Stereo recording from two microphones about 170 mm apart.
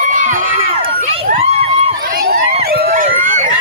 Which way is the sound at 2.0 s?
55° right (ahead or behind).